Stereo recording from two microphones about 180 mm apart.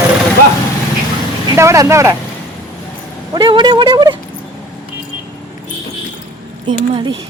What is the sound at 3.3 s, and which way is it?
Speech, 25° right (ahead or behind).